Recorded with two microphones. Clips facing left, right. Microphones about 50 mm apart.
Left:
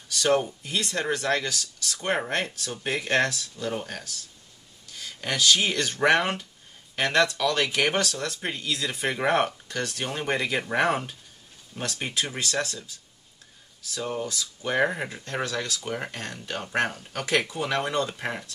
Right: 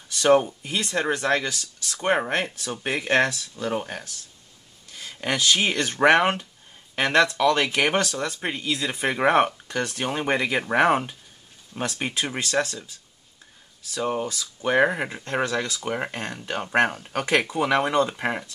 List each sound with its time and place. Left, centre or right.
0.1 s speech: right
13.9 s speech: right